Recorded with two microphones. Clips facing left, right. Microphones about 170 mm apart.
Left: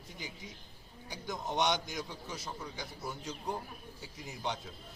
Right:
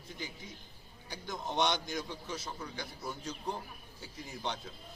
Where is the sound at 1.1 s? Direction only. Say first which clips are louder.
Left 1 dB; 15° left (ahead or behind).